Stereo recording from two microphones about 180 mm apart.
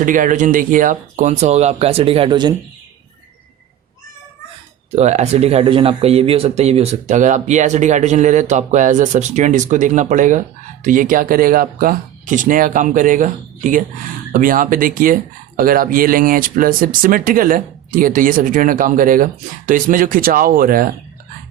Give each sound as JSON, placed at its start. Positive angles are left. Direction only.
{"t": 0.0, "sound": "speech", "side_deg": -45}
{"t": 4.9, "sound": "speech", "side_deg": -40}